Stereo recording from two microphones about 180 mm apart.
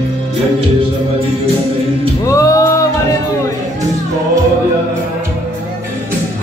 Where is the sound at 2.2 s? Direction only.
20° left (ahead or behind).